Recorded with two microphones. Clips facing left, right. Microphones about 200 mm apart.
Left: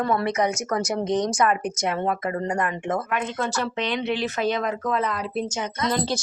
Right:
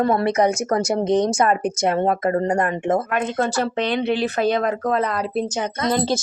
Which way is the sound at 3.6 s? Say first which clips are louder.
Right 5 dB; 35° right (ahead or behind).